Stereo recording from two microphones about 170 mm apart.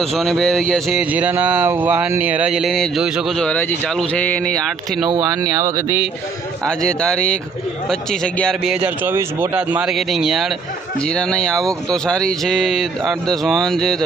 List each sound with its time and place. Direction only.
0.0 s speech: centre (ahead or behind)
5.0 s speech: 20° right (ahead or behind)
6.7 s speech: 5° left (ahead or behind)